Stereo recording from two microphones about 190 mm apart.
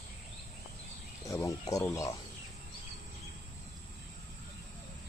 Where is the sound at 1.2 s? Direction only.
15° left (ahead or behind).